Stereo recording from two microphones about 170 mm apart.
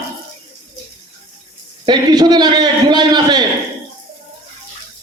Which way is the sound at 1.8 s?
25° right (ahead or behind).